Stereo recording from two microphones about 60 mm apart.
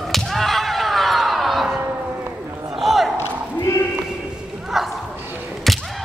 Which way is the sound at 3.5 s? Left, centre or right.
Left.